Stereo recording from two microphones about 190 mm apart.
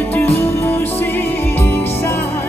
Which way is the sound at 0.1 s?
10° left (ahead or behind).